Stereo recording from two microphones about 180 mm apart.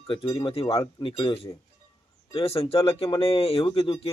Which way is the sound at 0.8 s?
20° left (ahead or behind).